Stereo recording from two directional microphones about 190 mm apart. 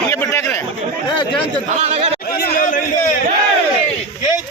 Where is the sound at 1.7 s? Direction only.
35° right (ahead or behind).